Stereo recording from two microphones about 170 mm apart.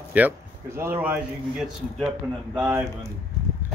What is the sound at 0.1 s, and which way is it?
A man's voice, 10° right (ahead or behind).